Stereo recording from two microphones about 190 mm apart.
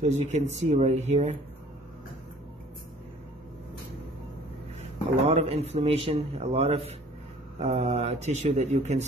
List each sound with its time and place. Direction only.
0.0 s a man's voice: 35° right (ahead or behind)
5.2 s a man's voice: 35° right (ahead or behind)